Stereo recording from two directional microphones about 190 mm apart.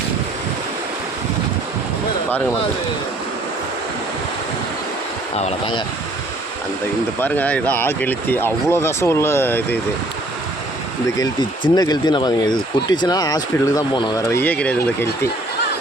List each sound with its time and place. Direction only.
5.4 s speech: 30° left (ahead or behind)
7.2 s speech: 10° left (ahead or behind)
11.7 s speech: 20° left (ahead or behind)